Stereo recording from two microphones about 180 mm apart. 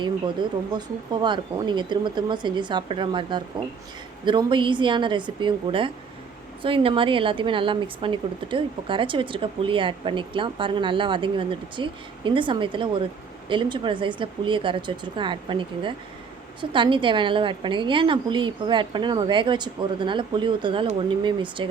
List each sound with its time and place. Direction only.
0.0 s a woman's voice: 25° right (ahead or behind)